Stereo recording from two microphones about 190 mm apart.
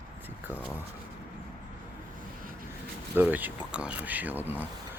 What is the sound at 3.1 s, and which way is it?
Speech, 10° right (ahead or behind).